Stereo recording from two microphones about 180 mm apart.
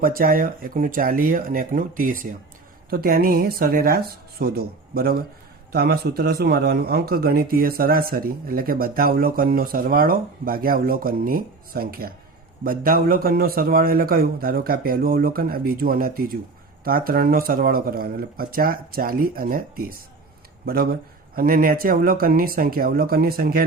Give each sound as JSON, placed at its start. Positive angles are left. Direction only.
{"t": 0.0, "sound": "speech", "side_deg": -55}
{"t": 21.3, "sound": "speech", "side_deg": -55}